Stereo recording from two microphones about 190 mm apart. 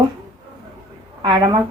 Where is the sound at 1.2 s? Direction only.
25° right (ahead or behind).